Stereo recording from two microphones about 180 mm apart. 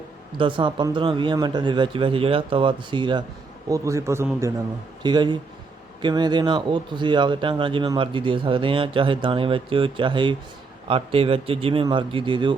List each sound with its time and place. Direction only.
0.3 s a man's voice: 25° right (ahead or behind)